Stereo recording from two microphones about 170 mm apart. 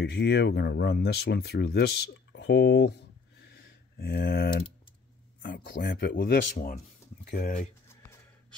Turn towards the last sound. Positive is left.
turn(degrees=65)  # may be behind; listen again after turning